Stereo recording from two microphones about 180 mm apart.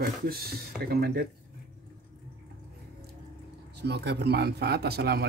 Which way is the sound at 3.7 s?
70° right (ahead or behind).